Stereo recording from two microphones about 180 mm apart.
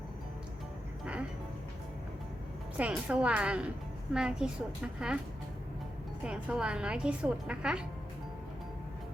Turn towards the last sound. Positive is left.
turn(degrees=-5)  # may be behind; listen again after turning